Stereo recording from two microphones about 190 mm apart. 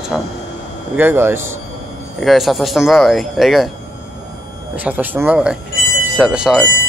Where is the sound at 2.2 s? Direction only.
Centre (ahead or behind).